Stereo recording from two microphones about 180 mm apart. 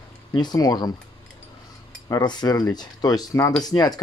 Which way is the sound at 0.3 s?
25° left (ahead or behind).